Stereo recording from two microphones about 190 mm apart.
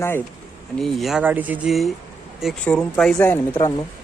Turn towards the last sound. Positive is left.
turn(degrees=20)  # may be behind; listen again after turning